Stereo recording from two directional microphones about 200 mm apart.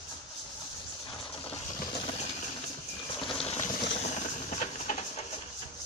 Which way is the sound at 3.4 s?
30° left (ahead or behind).